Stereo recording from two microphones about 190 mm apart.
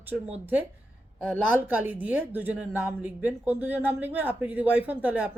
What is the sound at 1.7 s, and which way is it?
Speech, 10° right (ahead or behind).